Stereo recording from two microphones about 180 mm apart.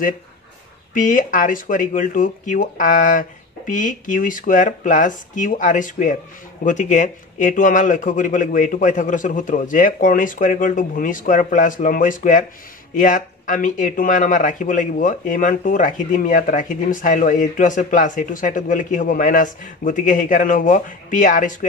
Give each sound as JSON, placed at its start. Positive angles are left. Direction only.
{"t": 0.9, "sound": "speech", "side_deg": 45}